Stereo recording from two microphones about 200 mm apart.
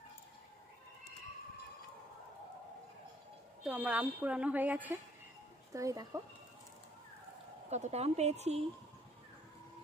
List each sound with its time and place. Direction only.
3.6 s speech: 5° right (ahead or behind)
7.7 s a woman's voice: 35° right (ahead or behind)